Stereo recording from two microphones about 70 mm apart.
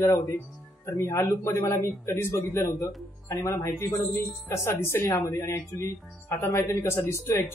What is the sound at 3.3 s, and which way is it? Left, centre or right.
Speech, left.